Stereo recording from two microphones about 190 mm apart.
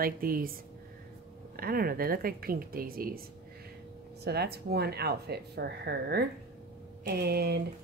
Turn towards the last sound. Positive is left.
turn(degrees=-55)  # may be behind; listen again after turning